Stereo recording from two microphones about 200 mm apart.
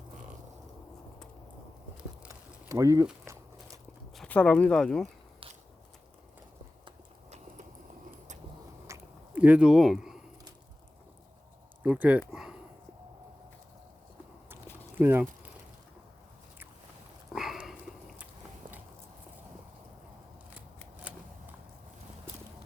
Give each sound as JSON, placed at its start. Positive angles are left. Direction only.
{"t": 2.6, "sound": "speech", "side_deg": -15}
{"t": 3.1, "sound": "biting", "side_deg": -15}
{"t": 4.2, "sound": "speech", "side_deg": 5}
{"t": 6.8, "sound": "a sound", "side_deg": -35}
{"t": 8.9, "sound": "a sound", "side_deg": -5}
{"t": 11.8, "sound": "speech", "side_deg": -10}
{"t": 14.9, "sound": "speech", "side_deg": -10}
{"t": 17.3, "sound": "dog", "side_deg": 0}